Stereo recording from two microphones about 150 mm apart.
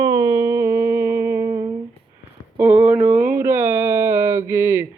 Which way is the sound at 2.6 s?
10° right (ahead or behind).